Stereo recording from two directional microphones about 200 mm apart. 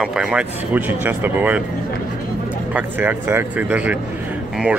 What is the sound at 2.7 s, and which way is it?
Speech, 10° right (ahead or behind).